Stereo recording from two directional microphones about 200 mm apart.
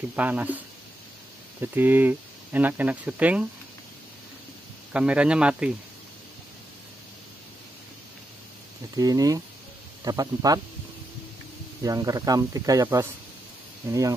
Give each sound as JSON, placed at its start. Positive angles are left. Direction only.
{"t": 0.1, "sound": "speech", "side_deg": -5}
{"t": 1.6, "sound": "speech", "side_deg": -10}
{"t": 4.9, "sound": "a man's voice", "side_deg": -5}
{"t": 8.9, "sound": "a man's voice", "side_deg": -20}
{"t": 11.8, "sound": "speech", "side_deg": -20}